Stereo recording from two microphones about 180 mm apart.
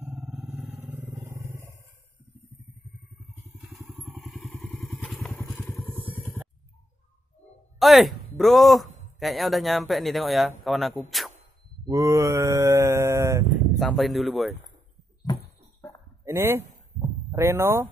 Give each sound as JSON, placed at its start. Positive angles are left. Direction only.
{"t": 0.0, "sound": "vehicle", "side_deg": -5}
{"t": 3.4, "sound": "vehicle", "side_deg": -10}
{"t": 7.8, "sound": "a man's voice", "side_deg": 0}
{"t": 11.8, "sound": "mantra", "side_deg": -15}
{"t": 13.7, "sound": "speech", "side_deg": 0}
{"t": 16.3, "sound": "speech", "side_deg": -15}